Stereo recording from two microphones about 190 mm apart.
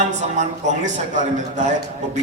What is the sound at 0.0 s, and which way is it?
A man's voice, 40° right (ahead or behind).